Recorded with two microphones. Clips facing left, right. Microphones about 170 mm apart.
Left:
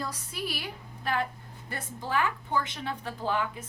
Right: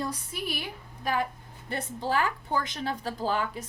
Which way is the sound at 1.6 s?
30° right (ahead or behind).